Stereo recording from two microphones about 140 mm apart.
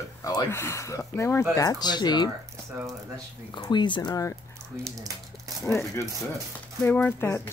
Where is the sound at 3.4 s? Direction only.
35° left (ahead or behind).